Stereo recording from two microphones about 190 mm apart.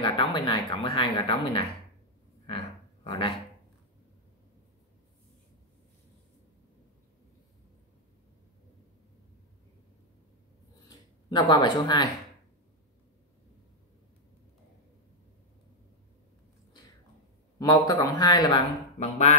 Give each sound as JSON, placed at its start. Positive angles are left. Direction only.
{"t": 0.0, "sound": "speech", "side_deg": 25}
{"t": 2.4, "sound": "a sound", "side_deg": 25}
{"t": 10.9, "sound": "speech", "side_deg": 20}
{"t": 17.6, "sound": "speech", "side_deg": 20}
{"t": 18.9, "sound": "speech", "side_deg": 35}